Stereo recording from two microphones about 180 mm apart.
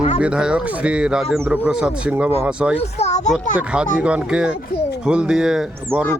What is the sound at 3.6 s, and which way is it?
A man's voice, 5° right (ahead or behind).